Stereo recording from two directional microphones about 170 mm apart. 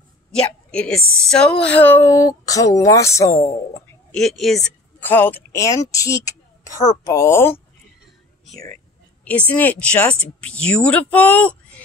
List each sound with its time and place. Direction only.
0.3 s a woman's voice: 5° left (ahead or behind)
4.1 s a woman's voice: centre (ahead or behind)
5.1 s a woman's voice: 10° left (ahead or behind)
9.5 s a woman's voice: 10° left (ahead or behind)